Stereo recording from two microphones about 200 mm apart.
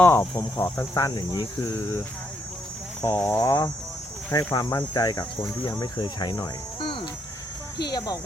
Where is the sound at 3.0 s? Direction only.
15° left (ahead or behind).